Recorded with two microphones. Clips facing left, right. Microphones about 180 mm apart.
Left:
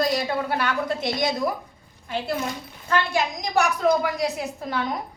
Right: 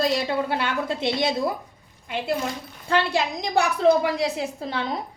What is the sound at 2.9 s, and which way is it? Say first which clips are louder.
A woman's voice: right 1 dB; 30° right (ahead or behind).